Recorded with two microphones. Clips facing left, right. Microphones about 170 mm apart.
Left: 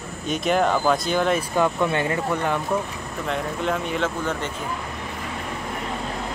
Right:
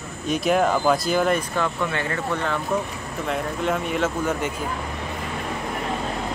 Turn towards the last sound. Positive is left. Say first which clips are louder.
# right 2 dB
turn(degrees=-5)  # may be behind; listen again after turning